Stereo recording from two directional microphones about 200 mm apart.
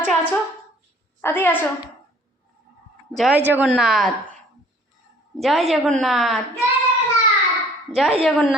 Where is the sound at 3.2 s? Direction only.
5° right (ahead or behind).